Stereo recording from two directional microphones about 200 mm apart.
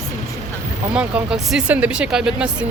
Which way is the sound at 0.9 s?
5° right (ahead or behind).